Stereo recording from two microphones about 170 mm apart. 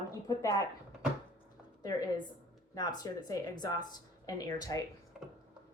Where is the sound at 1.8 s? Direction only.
20° left (ahead or behind).